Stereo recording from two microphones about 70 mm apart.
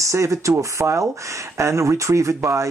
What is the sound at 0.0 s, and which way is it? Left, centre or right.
Speech, right.